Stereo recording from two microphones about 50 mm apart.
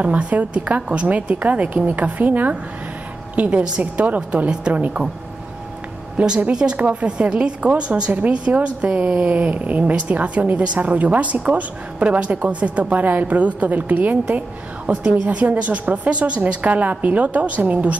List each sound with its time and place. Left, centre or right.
0.0 s a woman's voice: right
4.5 s a woman's voice: right
6.1 s a woman's voice: centre